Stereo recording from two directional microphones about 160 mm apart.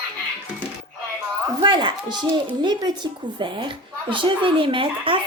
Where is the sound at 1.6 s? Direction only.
30° right (ahead or behind).